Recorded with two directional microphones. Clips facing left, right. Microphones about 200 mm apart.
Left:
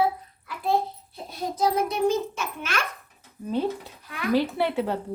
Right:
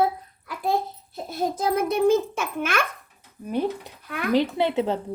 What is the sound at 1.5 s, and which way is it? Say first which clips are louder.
A child's voice: left 1 dB; 50° right (ahead or behind).